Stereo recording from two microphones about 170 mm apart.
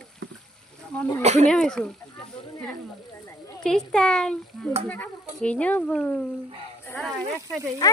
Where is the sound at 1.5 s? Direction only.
5° left (ahead or behind).